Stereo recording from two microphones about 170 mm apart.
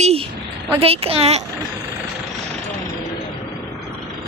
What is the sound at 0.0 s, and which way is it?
A woman's voice, 35° right (ahead or behind).